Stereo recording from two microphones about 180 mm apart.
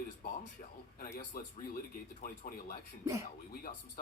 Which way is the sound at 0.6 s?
40° left (ahead or behind).